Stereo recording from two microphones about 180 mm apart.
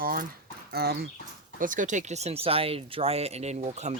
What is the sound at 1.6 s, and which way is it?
Speech, 45° right (ahead or behind).